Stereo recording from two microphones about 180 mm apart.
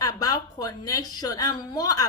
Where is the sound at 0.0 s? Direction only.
20° left (ahead or behind).